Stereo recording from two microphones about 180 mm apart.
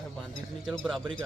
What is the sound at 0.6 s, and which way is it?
Speech, centre (ahead or behind).